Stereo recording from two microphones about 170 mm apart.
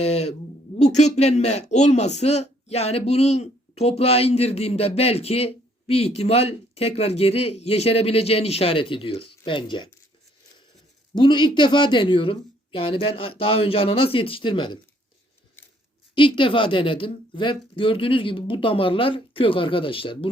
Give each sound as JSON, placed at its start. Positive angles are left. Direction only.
{"t": 0.0, "sound": "speech", "side_deg": 40}
{"t": 11.1, "sound": "speech", "side_deg": 30}
{"t": 16.1, "sound": "speech", "side_deg": 30}